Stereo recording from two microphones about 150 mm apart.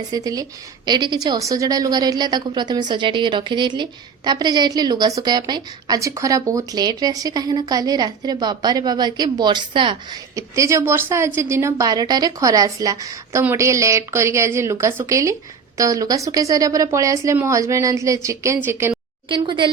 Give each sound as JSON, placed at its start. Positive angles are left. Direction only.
{"t": 0.1, "sound": "a woman's voice", "side_deg": -25}
{"t": 19.3, "sound": "a woman's voice", "side_deg": -35}